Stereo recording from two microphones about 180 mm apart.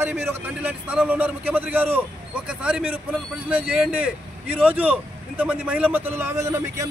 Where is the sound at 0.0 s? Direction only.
10° right (ahead or behind).